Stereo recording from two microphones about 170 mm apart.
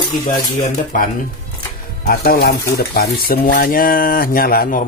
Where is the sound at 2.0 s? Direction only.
60° left (ahead or behind).